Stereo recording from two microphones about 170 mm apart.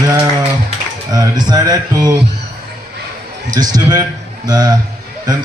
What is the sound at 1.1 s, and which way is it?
Speech, 25° right (ahead or behind).